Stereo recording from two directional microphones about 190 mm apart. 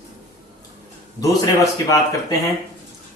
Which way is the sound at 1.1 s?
20° left (ahead or behind).